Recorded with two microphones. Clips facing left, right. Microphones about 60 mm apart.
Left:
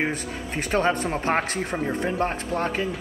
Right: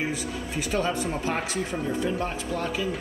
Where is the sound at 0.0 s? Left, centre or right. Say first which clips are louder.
Left 2 dB; left.